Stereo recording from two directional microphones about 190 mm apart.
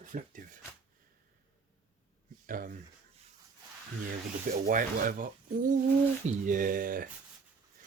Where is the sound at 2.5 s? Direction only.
45° right (ahead or behind).